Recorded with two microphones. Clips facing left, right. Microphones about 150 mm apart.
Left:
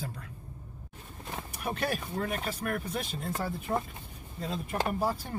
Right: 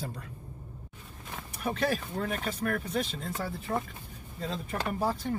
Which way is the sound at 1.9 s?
5° left (ahead or behind).